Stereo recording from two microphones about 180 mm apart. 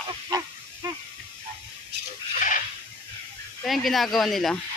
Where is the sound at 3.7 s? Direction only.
Centre (ahead or behind).